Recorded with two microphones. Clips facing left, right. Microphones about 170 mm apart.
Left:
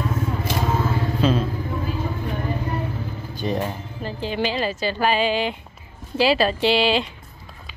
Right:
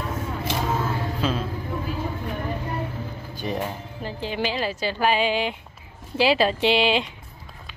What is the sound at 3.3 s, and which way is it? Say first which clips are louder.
Speech: left 3 dB; 10° right (ahead or behind).